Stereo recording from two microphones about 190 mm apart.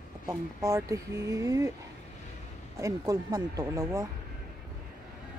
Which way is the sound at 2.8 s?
15° right (ahead or behind).